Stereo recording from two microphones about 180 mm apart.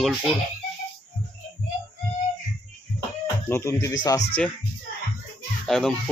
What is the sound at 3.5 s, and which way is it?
Speech, 15° left (ahead or behind).